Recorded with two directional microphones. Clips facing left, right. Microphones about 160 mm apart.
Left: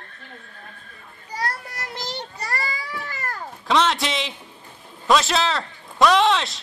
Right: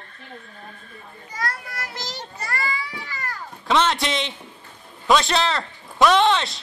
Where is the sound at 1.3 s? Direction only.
35° left (ahead or behind).